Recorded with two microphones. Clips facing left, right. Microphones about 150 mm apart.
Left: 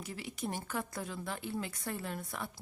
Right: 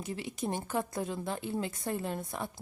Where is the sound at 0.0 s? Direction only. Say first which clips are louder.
Right 4 dB; 25° right (ahead or behind).